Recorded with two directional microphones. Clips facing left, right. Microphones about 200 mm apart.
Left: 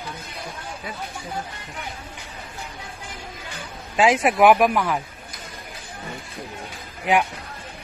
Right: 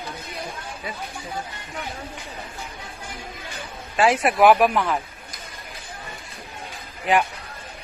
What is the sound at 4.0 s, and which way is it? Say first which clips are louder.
Speech: left 1 dB; 15° left (ahead or behind).